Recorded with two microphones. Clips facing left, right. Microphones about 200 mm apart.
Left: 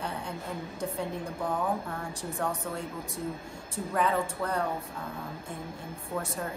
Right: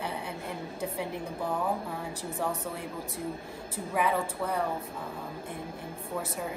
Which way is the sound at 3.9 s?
5° right (ahead or behind).